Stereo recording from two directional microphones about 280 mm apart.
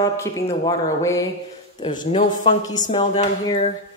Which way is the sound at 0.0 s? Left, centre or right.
Centre.